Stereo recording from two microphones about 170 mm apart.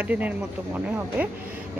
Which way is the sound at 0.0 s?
10° right (ahead or behind).